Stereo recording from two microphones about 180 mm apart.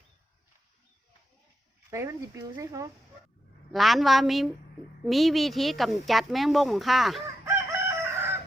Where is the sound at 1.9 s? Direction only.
15° right (ahead or behind).